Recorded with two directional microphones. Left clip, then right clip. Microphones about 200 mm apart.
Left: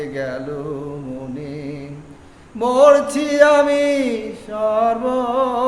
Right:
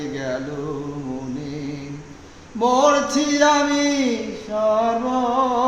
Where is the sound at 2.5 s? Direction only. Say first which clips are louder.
Left 4 dB; 20° left (ahead or behind).